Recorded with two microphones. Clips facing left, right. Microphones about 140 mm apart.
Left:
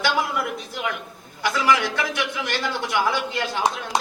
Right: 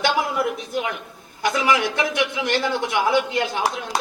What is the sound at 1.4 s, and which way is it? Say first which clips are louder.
A man's voice: right 1 dB; 20° right (ahead or behind).